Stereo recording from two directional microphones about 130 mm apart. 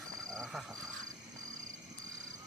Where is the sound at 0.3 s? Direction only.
5° left (ahead or behind).